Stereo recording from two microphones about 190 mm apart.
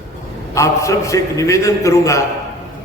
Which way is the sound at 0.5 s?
15° left (ahead or behind).